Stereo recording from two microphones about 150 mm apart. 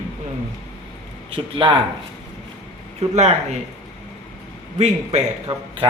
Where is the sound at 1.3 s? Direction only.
35° right (ahead or behind).